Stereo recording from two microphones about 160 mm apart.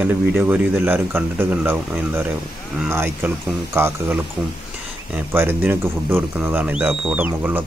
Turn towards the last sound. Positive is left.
turn(degrees=-10)  # may be behind; listen again after turning